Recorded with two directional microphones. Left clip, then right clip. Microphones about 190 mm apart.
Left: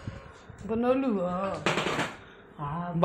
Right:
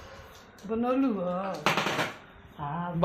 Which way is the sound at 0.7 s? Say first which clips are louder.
Left 1 dB; 45° left (ahead or behind).